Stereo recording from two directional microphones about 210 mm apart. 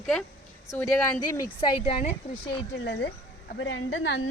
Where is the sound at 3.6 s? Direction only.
65° left (ahead or behind).